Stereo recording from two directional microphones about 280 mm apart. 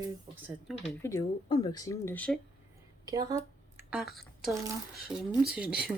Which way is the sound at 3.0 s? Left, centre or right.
Centre.